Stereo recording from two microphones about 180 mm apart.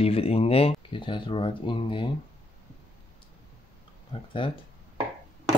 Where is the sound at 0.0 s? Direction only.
35° left (ahead or behind).